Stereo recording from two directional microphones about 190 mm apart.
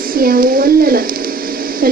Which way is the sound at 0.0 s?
50° right (ahead or behind).